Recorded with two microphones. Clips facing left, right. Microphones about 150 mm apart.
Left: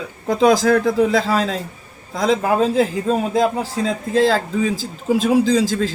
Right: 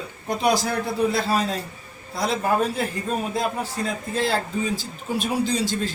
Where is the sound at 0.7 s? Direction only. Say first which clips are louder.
Left 8 dB; 90° left.